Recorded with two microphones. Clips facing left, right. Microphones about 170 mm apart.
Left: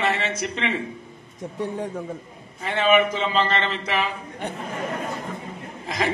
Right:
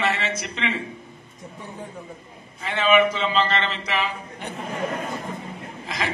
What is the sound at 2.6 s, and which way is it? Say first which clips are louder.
A man's voice: even; 45° left (ahead or behind).